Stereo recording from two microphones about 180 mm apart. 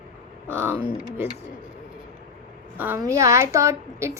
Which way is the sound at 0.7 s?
30° left (ahead or behind).